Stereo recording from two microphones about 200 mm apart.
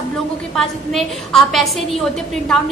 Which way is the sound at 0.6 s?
Centre (ahead or behind).